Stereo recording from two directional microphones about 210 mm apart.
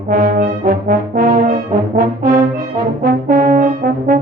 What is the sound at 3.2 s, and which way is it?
Brass instrument, 40° right (ahead or behind).